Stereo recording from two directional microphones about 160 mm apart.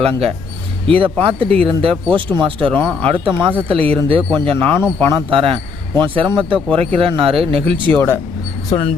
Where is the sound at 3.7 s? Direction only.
35° right (ahead or behind).